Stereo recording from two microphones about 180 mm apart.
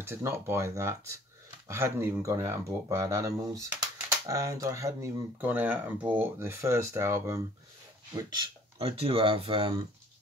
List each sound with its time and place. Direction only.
0.0 s speech: 15° right (ahead or behind)
8.2 s speech: 30° right (ahead or behind)